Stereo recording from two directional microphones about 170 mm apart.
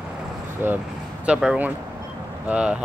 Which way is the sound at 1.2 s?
5° right (ahead or behind).